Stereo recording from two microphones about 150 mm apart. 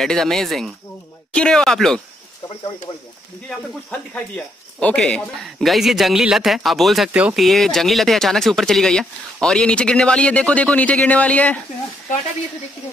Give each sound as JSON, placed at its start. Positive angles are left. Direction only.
{"t": 0.0, "sound": "speech", "side_deg": 0}
{"t": 2.4, "sound": "speech", "side_deg": 25}
{"t": 3.4, "sound": "speech", "side_deg": 10}